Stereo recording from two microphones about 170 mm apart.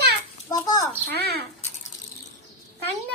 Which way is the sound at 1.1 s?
70° right (ahead or behind).